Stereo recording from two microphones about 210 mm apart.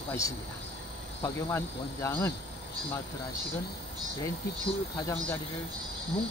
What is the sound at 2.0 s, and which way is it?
Speech, 10° left (ahead or behind).